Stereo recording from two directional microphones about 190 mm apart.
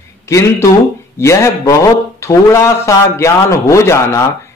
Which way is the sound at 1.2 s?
15° left (ahead or behind).